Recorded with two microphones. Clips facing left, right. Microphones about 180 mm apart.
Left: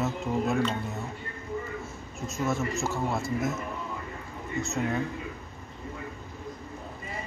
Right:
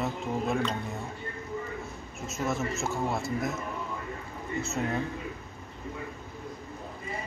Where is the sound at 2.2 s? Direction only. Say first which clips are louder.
Left 2 dB; centre (ahead or behind).